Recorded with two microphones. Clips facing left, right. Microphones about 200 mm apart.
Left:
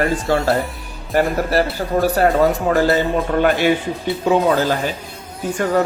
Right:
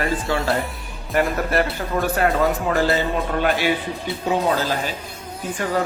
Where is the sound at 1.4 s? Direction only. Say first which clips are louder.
Left 3 dB; 35° left (ahead or behind).